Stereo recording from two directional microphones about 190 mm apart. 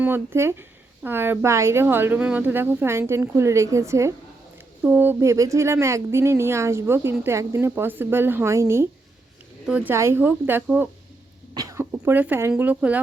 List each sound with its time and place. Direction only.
0.0 s speech: 10° right (ahead or behind)